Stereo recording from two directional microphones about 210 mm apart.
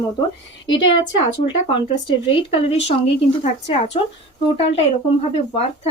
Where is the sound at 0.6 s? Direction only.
25° left (ahead or behind).